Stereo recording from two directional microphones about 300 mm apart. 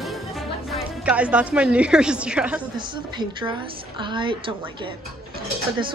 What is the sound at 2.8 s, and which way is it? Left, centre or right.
A woman's voice, centre.